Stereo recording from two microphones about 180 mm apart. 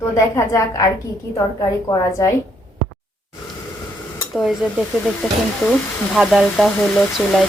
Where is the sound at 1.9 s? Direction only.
20° left (ahead or behind).